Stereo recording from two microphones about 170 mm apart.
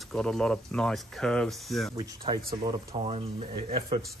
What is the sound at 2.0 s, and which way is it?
Speech, 25° right (ahead or behind).